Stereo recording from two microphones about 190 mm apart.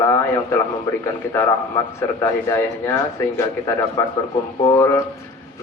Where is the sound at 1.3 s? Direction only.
15° left (ahead or behind).